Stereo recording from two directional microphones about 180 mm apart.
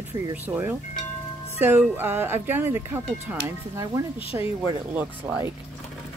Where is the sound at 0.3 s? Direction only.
10° right (ahead or behind).